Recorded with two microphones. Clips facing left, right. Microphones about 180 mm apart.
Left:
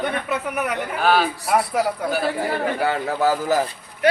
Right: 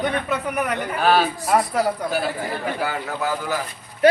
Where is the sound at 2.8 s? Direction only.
25° left (ahead or behind).